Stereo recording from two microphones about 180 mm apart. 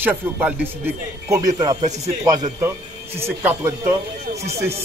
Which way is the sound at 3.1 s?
15° right (ahead or behind).